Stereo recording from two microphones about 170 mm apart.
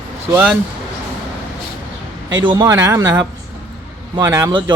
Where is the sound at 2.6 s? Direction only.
15° right (ahead or behind).